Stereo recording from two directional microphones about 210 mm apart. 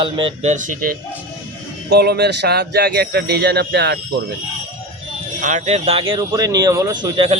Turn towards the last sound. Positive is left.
turn(degrees=-20)  # may be behind; listen again after turning